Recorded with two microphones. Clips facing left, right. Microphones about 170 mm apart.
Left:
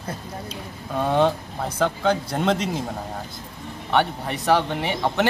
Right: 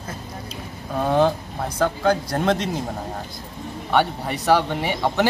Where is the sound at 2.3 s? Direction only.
5° left (ahead or behind).